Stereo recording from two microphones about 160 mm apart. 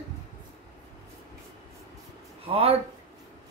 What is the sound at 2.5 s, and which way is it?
Speech, 35° right (ahead or behind).